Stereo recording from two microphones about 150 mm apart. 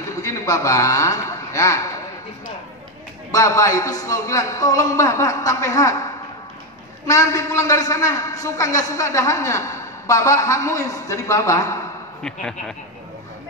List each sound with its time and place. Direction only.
0.1 s a man's voice: 20° left (ahead or behind)
3.3 s a man's voice: 20° left (ahead or behind)
12.2 s speech: 5° left (ahead or behind)